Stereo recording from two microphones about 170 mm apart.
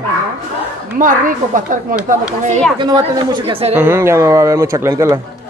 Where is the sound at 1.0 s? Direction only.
50° right (ahead or behind).